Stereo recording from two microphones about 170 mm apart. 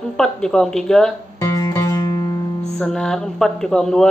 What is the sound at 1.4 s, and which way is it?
Music, 20° left (ahead or behind).